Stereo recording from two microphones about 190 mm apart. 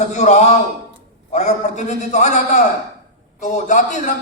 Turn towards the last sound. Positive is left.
turn(degrees=40)  # may be behind; listen again after turning